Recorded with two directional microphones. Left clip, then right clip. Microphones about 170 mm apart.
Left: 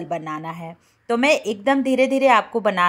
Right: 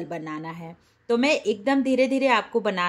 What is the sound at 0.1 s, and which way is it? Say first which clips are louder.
A woman's voice: left 6 dB; 15° left (ahead or behind).